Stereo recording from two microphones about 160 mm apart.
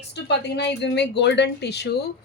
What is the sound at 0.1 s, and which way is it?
Speech, 90° left.